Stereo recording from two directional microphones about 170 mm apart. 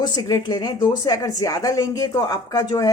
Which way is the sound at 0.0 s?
20° left (ahead or behind).